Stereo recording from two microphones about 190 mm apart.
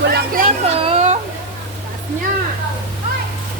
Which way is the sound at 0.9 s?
35° right (ahead or behind).